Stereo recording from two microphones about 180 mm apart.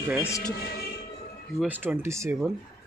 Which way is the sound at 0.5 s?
60° left (ahead or behind).